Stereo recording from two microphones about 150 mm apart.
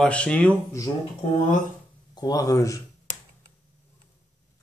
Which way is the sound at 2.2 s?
25° left (ahead or behind).